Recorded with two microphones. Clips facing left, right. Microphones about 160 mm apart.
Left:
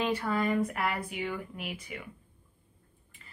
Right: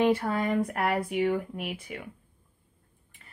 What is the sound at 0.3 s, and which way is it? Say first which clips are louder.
Speech: right 1 dB; 35° right (ahead or behind).